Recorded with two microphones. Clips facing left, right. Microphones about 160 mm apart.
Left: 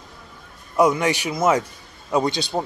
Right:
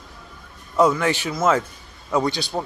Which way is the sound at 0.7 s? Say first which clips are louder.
Even; 15° left (ahead or behind).